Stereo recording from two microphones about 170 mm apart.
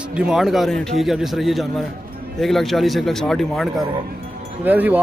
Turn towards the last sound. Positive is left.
turn(degrees=-10)  # may be behind; listen again after turning